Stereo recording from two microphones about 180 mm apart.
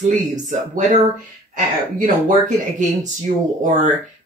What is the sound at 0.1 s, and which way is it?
Speech, 45° right (ahead or behind).